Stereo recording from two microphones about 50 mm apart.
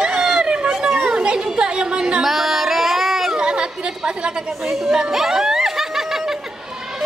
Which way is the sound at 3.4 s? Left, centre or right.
Centre.